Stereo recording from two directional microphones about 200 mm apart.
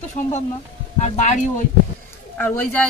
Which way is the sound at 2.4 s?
10° left (ahead or behind).